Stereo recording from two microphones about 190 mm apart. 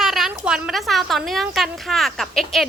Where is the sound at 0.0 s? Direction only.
Centre (ahead or behind).